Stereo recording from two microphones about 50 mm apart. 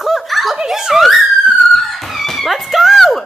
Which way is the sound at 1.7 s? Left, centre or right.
Centre.